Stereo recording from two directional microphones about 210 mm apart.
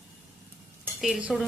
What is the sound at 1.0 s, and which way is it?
Speech, centre (ahead or behind).